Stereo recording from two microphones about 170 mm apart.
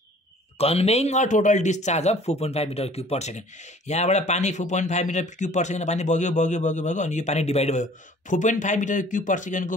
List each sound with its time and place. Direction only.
0.6 s speech: 35° left (ahead or behind)